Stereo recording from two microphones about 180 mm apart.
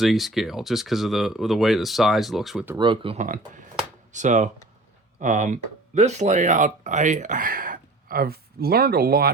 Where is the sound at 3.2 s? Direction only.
50° right (ahead or behind).